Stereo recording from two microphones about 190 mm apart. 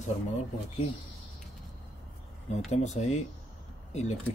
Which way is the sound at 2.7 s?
35° left (ahead or behind).